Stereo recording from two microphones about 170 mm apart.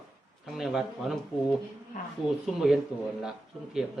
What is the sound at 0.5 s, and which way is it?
Speech, centre (ahead or behind).